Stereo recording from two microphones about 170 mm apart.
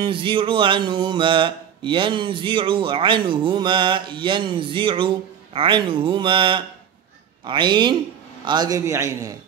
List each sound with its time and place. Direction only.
0.0 s music: 30° right (ahead or behind)